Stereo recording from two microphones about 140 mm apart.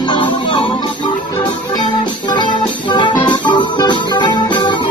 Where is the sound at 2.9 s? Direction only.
30° left (ahead or behind).